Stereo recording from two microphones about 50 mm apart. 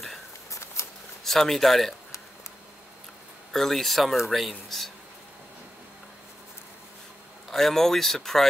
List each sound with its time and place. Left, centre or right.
0.5 s a sound: left
1.2 s speech: centre
3.5 s speech: centre
7.4 s speech: centre